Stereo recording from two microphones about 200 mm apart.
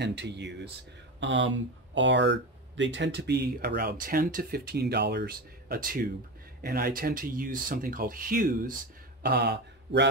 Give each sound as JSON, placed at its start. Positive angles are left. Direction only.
{"t": 0.0, "sound": "speech", "side_deg": -60}
{"t": 9.2, "sound": "speech", "side_deg": -55}